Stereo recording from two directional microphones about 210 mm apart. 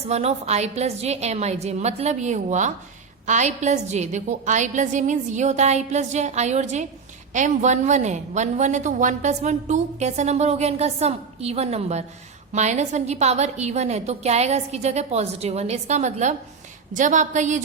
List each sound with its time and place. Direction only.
0.1 s a woman's voice: 30° right (ahead or behind)